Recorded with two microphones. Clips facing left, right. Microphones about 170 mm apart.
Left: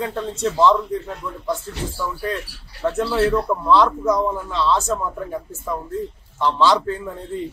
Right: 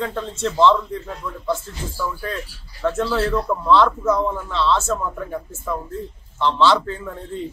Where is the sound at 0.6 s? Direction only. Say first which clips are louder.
Right 1 dB; 15° left (ahead or behind).